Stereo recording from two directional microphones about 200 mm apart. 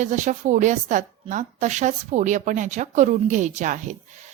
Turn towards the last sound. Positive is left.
turn(degrees=-40)  # may be behind; listen again after turning